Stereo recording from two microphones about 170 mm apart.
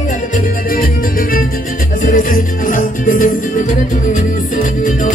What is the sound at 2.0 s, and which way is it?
Music, 55° left (ahead or behind).